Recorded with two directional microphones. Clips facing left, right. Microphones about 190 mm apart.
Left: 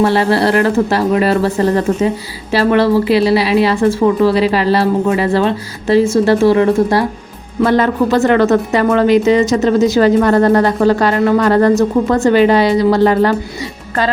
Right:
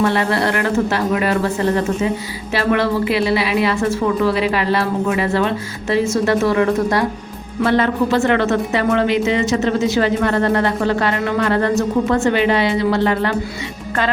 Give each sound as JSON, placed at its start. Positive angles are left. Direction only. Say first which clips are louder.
{"t": 0.0, "sound": "a woman's voice", "louder": "left 5 dB", "side_deg": 35}
{"t": 7.6, "sound": "a woman's voice", "louder": "left 4 dB", "side_deg": 45}